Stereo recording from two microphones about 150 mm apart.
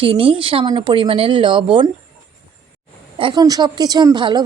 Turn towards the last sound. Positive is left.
turn(degrees=-30)  # may be behind; listen again after turning